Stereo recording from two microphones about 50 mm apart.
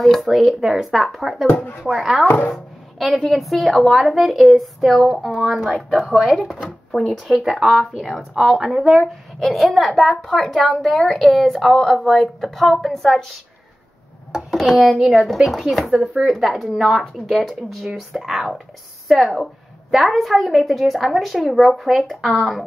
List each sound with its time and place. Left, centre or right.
0.0 s a woman's voice: centre
1.5 s speech: left
1.8 s a woman's voice: centre
2.2 s speech: left
2.5 s a woman's voice: centre
5.1 s a woman's voice: centre